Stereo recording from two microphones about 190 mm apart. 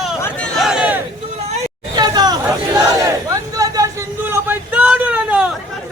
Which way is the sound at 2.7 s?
20° right (ahead or behind).